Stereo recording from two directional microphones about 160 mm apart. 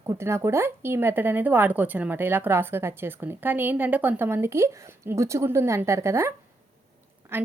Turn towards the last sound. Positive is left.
turn(degrees=-15)  # may be behind; listen again after turning